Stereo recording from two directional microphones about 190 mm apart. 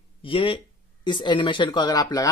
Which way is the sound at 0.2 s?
25° left (ahead or behind).